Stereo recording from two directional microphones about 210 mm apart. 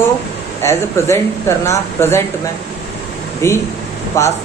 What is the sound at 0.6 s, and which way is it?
Speech, 15° left (ahead or behind).